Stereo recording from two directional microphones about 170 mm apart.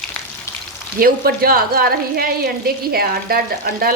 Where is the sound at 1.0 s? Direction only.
60° right (ahead or behind).